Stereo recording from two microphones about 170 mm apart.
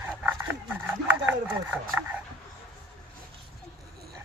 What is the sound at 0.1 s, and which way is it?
Dog, 10° right (ahead or behind).